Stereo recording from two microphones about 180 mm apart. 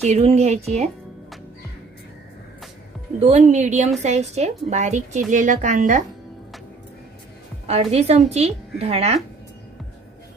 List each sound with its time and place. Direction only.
0.0 s a woman's voice: 35° right (ahead or behind)
3.3 s a woman's voice: 40° right (ahead or behind)
7.6 s a woman's voice: 35° right (ahead or behind)